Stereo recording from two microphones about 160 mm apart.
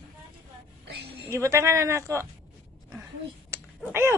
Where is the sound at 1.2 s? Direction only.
20° right (ahead or behind).